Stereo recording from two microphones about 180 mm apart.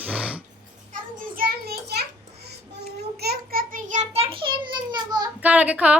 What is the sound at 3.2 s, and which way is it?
A child's voice, 60° right (ahead or behind).